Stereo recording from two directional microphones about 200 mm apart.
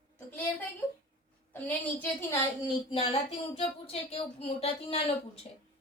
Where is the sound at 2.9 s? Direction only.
25° left (ahead or behind).